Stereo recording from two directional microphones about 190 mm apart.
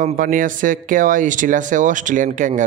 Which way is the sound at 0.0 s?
45° right (ahead or behind).